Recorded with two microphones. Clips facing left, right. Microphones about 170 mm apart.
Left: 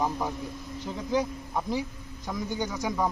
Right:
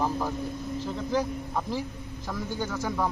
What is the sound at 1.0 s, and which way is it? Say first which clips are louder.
Speech: left 2 dB; 15° left (ahead or behind).